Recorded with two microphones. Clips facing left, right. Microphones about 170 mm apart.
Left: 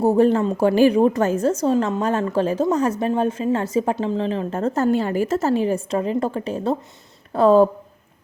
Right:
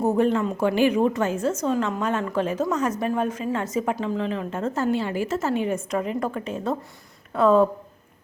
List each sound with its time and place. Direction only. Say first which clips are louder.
0.0 s a woman's voice: left 5 dB; 35° left (ahead or behind)